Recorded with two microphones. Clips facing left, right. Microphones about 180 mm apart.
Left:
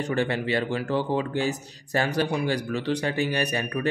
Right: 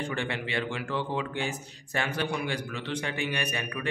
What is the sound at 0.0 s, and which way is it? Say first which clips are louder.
Speech: left 7 dB; 40° left (ahead or behind).